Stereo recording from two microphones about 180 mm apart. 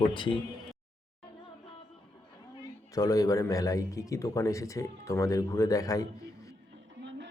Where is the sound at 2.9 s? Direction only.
20° left (ahead or behind).